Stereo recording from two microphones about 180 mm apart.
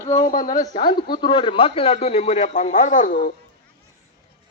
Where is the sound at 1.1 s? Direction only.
25° left (ahead or behind); by 3.3 s 45° left (ahead or behind).